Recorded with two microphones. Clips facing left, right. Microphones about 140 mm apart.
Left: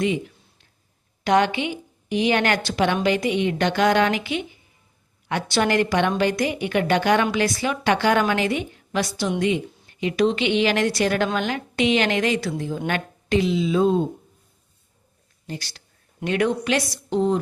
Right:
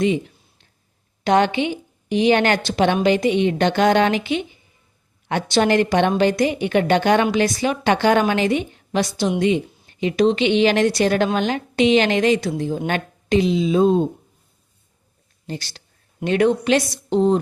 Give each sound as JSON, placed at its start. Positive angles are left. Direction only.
{"t": 1.2, "sound": "a woman's voice", "side_deg": -25}
{"t": 15.4, "sound": "a woman's voice", "side_deg": -30}